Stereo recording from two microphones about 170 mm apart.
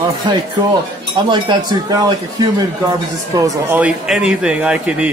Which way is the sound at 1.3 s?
25° right (ahead or behind).